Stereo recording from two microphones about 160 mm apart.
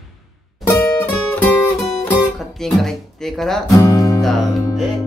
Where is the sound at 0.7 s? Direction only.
15° left (ahead or behind).